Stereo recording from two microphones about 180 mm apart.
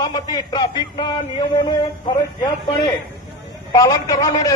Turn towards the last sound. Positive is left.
turn(degrees=20)  # may be behind; listen again after turning